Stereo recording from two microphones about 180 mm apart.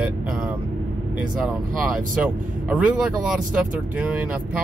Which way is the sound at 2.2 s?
5° right (ahead or behind).